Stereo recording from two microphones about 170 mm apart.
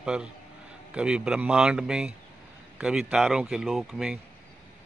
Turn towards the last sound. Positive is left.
turn(degrees=0)  # may be behind; listen again after turning